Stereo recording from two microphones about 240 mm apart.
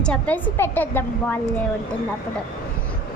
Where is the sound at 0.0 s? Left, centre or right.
Centre.